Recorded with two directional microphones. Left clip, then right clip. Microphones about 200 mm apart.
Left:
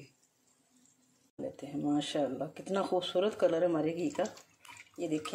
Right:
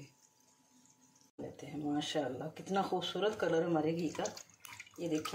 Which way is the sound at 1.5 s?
50° left (ahead or behind).